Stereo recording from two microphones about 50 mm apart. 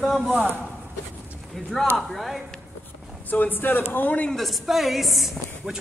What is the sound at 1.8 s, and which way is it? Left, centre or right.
Speech, centre.